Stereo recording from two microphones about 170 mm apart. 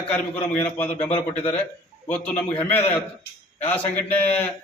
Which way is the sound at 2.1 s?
10° left (ahead or behind).